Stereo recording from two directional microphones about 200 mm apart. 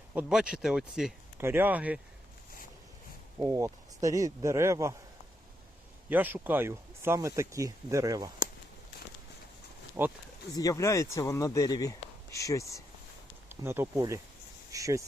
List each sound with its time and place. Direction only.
0.1 s speech: 5° right (ahead or behind)
3.3 s speech: 15° right (ahead or behind)
6.1 s speech: 10° right (ahead or behind)
10.0 s speech: 10° right (ahead or behind)
10.5 s speech: 20° left (ahead or behind)
13.6 s speech: 15° right (ahead or behind)